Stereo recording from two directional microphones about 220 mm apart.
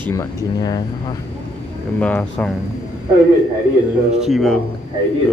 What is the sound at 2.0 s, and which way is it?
Speech, 5° left (ahead or behind).